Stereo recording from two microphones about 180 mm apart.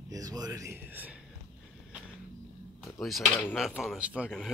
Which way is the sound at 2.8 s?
Centre (ahead or behind).